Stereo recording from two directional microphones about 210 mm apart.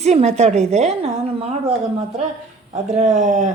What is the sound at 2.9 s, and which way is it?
Speech, 35° right (ahead or behind).